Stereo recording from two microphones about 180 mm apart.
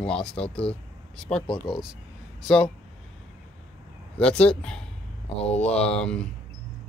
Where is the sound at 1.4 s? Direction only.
25° left (ahead or behind).